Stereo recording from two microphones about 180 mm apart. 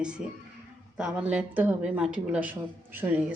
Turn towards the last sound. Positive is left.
turn(degrees=-10)  # may be behind; listen again after turning